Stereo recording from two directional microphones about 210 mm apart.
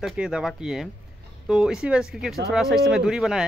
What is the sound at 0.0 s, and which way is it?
Speech, 5° right (ahead or behind).